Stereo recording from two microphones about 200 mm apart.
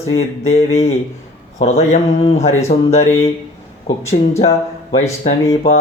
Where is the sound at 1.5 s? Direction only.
35° left (ahead or behind).